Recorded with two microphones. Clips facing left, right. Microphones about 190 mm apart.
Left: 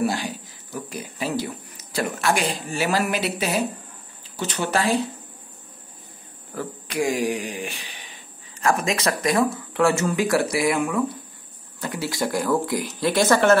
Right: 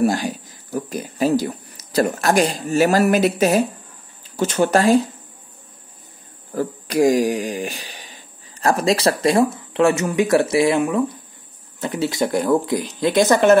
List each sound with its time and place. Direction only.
0.0 s speech: 45° right (ahead or behind)
6.5 s speech: 40° right (ahead or behind); by 13.6 s 15° right (ahead or behind)